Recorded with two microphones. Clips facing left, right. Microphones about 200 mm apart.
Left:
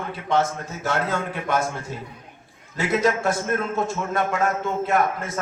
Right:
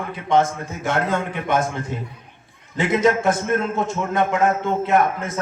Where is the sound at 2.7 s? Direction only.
20° right (ahead or behind).